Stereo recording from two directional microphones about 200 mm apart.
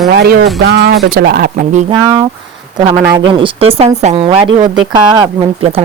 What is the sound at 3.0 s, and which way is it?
Speech, 20° right (ahead or behind).